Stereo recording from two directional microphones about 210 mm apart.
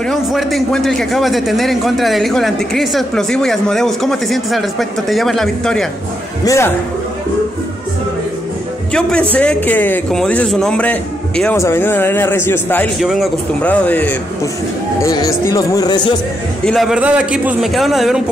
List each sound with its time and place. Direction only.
0.0 s a man's voice: centre (ahead or behind)
6.4 s a man's voice: 15° left (ahead or behind)
8.9 s a man's voice: 5° left (ahead or behind)
16.6 s a man's voice: centre (ahead or behind)